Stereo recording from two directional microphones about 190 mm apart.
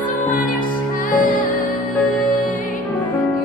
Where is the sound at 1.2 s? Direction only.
45° left (ahead or behind).